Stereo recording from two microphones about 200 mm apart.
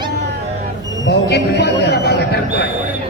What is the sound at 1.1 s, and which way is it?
A man's voice, 55° left (ahead or behind).